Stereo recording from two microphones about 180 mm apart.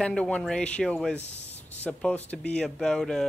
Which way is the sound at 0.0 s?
5° left (ahead or behind).